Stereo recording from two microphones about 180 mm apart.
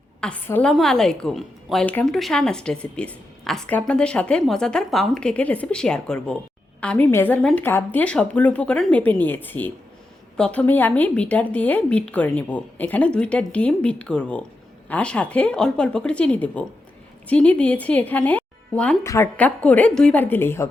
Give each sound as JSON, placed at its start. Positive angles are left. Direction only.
{"t": 0.2, "sound": "a woman's voice", "side_deg": 10}